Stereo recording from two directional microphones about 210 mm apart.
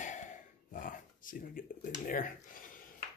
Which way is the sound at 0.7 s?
40° left (ahead or behind).